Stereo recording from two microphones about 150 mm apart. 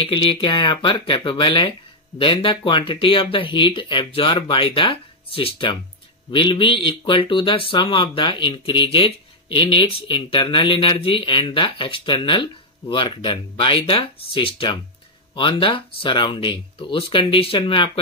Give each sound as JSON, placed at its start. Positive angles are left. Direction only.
{"t": 0.0, "sound": "speech", "side_deg": 35}